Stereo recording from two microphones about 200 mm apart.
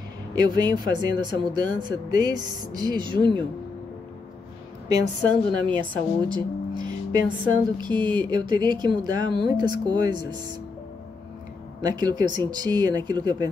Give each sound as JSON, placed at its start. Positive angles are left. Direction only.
{"t": 0.3, "sound": "speech", "side_deg": -20}
{"t": 5.7, "sound": "speech", "side_deg": -25}
{"t": 11.8, "sound": "speech", "side_deg": -20}